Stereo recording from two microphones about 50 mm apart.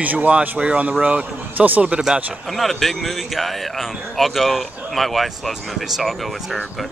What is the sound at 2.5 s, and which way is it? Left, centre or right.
Speech, centre.